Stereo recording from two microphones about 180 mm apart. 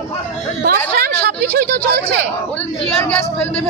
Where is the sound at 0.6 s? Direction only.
60° right (ahead or behind).